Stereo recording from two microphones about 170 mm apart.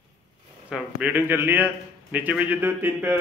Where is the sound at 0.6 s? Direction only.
5° right (ahead or behind).